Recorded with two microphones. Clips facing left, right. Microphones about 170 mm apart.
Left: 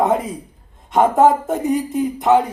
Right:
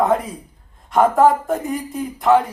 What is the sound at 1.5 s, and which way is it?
Speech, centre (ahead or behind).